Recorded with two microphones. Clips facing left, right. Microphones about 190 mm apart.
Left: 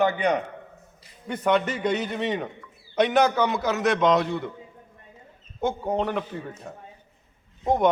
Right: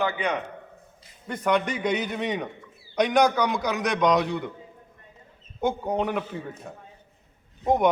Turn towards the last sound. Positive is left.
turn(degrees=0)  # may be behind; listen again after turning